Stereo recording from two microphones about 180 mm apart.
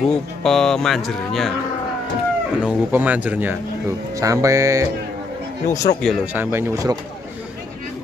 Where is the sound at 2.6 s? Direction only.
10° right (ahead or behind).